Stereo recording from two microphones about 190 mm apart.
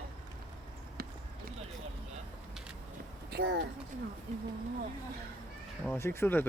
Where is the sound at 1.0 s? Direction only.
55° right (ahead or behind).